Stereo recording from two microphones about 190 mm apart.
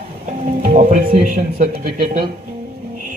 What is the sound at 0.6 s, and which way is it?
A man's voice, 45° right (ahead or behind).